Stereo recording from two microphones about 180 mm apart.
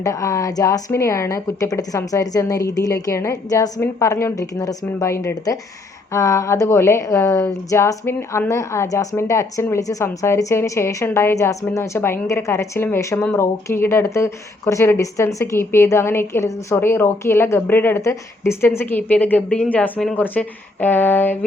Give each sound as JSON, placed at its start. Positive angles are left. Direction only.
{"t": 0.0, "sound": "speech", "side_deg": 15}